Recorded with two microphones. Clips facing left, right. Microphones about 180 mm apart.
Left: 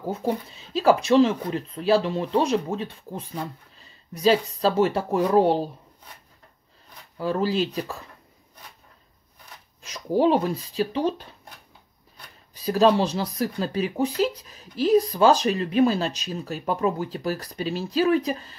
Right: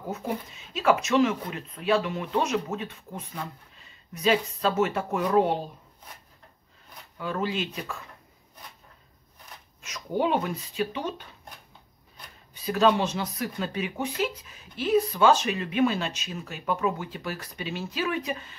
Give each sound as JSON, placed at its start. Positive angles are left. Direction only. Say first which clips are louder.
{"t": 0.0, "sound": "speech", "louder": "left 5 dB", "side_deg": 30}
{"t": 7.2, "sound": "speech", "louder": "left 6 dB", "side_deg": 35}
{"t": 9.8, "sound": "speech", "louder": "left 5 dB", "side_deg": 35}
{"t": 12.5, "sound": "speech", "louder": "left 4 dB", "side_deg": 35}